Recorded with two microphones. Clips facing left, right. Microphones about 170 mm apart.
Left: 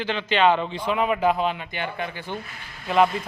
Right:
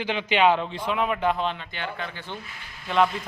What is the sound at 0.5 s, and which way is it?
A man's voice, centre (ahead or behind).